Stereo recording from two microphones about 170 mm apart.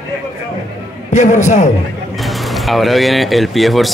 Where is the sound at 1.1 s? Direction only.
45° left (ahead or behind).